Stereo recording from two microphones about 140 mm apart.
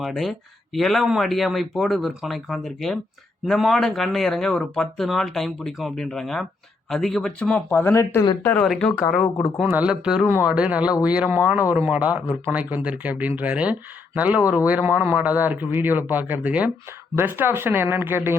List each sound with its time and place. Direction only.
0.0 s speech: centre (ahead or behind)
8.6 s speech: 5° left (ahead or behind)
9.6 s speech: 10° right (ahead or behind)